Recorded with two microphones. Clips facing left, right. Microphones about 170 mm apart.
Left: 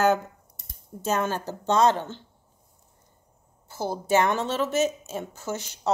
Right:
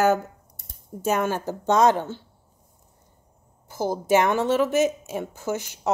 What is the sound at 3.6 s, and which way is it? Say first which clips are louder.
A woman's voice: right 4 dB; 15° right (ahead or behind).